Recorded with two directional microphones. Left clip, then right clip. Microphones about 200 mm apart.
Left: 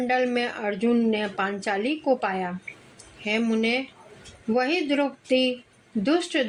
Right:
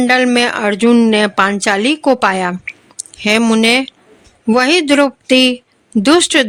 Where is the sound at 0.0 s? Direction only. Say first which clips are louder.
Right 12 dB; 45° right (ahead or behind).